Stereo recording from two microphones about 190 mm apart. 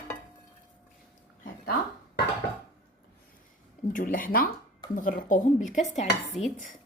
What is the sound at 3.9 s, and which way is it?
Speech, 45° left (ahead or behind).